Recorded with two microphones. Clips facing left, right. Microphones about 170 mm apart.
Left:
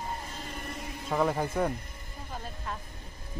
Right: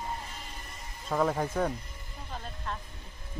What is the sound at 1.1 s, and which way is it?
Speech, centre (ahead or behind).